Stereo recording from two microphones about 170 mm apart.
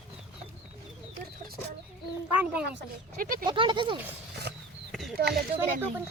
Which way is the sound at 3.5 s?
30° right (ahead or behind).